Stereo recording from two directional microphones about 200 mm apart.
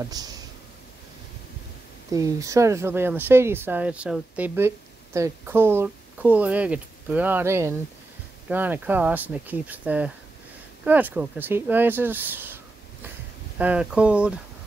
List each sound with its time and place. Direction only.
0.0 s speech: 20° right (ahead or behind)
2.1 s speech: 15° right (ahead or behind)
13.6 s speech: 5° right (ahead or behind)